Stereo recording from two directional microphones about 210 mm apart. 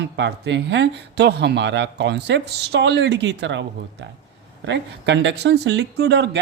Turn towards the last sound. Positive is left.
turn(degrees=-55)  # may be behind; listen again after turning